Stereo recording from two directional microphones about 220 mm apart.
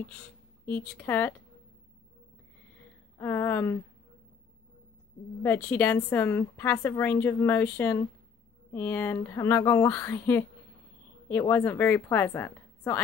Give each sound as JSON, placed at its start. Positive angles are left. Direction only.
{"t": 0.7, "sound": "a woman's voice", "side_deg": 10}
{"t": 3.2, "sound": "a woman's voice", "side_deg": 10}
{"t": 5.4, "sound": "a woman's voice", "side_deg": 10}